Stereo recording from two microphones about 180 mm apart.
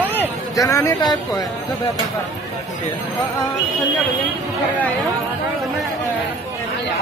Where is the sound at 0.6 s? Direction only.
15° left (ahead or behind).